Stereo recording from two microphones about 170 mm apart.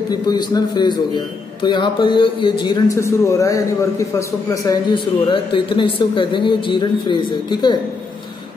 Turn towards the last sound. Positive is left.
turn(degrees=25)  # may be behind; listen again after turning